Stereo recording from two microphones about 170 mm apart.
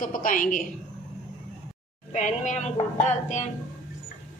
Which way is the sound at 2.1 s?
45° left (ahead or behind).